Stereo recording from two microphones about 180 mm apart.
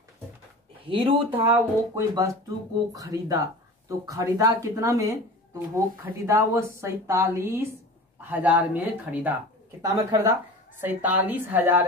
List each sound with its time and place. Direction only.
0.8 s speech: 30° right (ahead or behind)
1.5 s a woman's voice: 20° right (ahead or behind)